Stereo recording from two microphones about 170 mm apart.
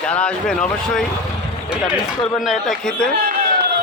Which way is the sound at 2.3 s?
Centre (ahead or behind).